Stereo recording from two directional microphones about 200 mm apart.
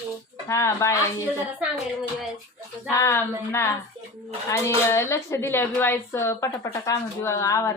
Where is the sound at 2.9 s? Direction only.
15° left (ahead or behind).